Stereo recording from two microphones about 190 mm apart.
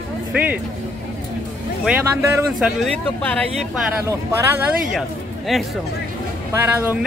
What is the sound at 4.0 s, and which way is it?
Speech, 15° right (ahead or behind).